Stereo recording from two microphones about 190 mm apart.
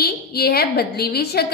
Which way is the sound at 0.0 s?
55° left (ahead or behind).